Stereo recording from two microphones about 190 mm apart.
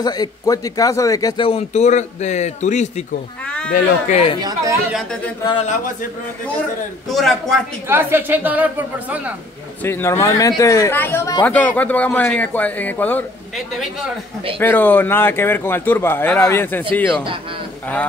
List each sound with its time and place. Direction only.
0.0 s a man's voice: 20° left (ahead or behind)
1.5 s a man's voice: 35° left (ahead or behind)
4.4 s speech: 20° right (ahead or behind)
7.1 s a man's voice: centre (ahead or behind)
7.9 s a woman's voice: 10° right (ahead or behind)
9.8 s speech: 15° left (ahead or behind)
14.6 s speech: 10° left (ahead or behind)